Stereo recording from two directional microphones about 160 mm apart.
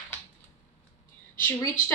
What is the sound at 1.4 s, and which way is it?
Speech, 10° left (ahead or behind).